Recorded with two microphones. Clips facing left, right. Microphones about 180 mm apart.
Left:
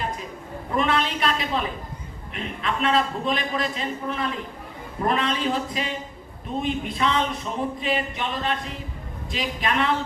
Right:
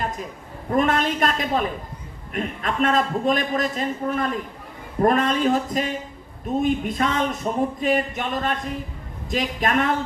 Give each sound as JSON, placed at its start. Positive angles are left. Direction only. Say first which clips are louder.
{"t": 0.8, "sound": "a man's voice", "louder": "right 3 dB", "side_deg": -45}